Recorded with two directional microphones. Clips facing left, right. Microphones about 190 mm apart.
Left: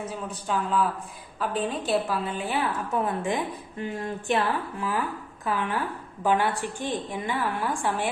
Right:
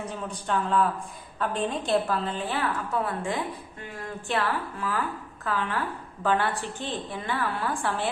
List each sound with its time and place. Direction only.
0.1 s a woman's voice: 5° left (ahead or behind)